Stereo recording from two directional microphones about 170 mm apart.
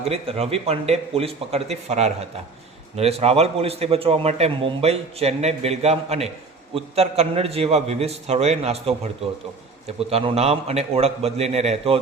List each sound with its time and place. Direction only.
0.0 s a man's voice: 35° right (ahead or behind)